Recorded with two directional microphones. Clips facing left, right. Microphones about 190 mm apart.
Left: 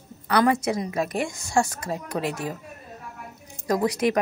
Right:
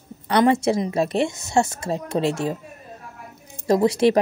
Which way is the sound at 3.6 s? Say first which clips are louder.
Right 5 dB; 25° right (ahead or behind).